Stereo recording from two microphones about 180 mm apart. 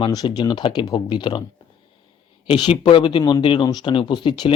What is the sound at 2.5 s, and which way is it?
Speech, 30° left (ahead or behind).